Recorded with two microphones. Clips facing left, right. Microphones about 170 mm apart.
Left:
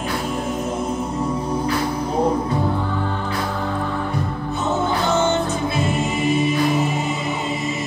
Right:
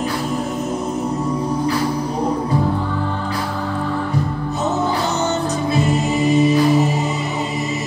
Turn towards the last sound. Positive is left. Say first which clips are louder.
# right 5 dB
turn(degrees=-40)  # may be behind; listen again after turning